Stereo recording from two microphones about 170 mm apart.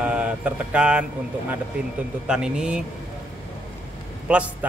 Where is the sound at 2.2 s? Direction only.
5° right (ahead or behind).